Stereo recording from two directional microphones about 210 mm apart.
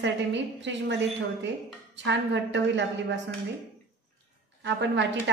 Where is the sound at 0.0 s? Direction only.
60° right (ahead or behind).